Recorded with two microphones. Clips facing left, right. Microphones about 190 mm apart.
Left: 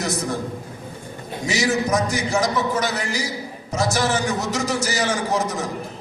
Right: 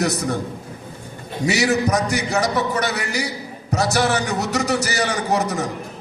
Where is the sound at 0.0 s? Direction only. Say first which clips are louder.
Right 3 dB; 65° right (ahead or behind).